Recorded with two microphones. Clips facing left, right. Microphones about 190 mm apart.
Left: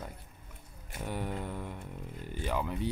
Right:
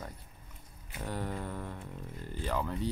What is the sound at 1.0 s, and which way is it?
Speech, 20° left (ahead or behind).